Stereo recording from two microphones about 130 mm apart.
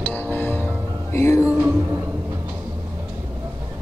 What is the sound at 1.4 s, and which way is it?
Music, 10° right (ahead or behind).